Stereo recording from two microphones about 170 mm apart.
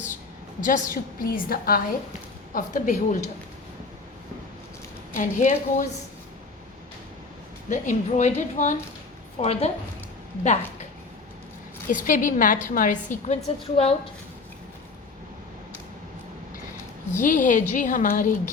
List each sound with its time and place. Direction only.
0.6 s a woman's voice: 55° left (ahead or behind)
5.1 s a woman's voice: 50° left (ahead or behind)
7.7 s a woman's voice: 45° left (ahead or behind)
11.9 s a woman's voice: 50° left (ahead or behind)
17.2 s a woman's voice: 50° left (ahead or behind)